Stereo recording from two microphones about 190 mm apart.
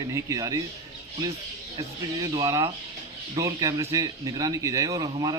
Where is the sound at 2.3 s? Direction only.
15° right (ahead or behind).